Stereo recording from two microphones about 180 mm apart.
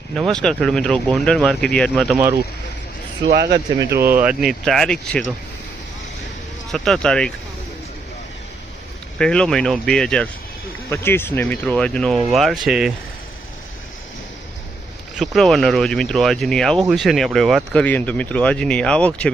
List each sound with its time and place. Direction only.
0.1 s speech: centre (ahead or behind)
3.2 s speech: 65° right (ahead or behind)
4.1 s speech: 5° right (ahead or behind)
6.7 s speech: centre (ahead or behind)
9.1 s speech: 5° left (ahead or behind)
15.1 s speech: centre (ahead or behind)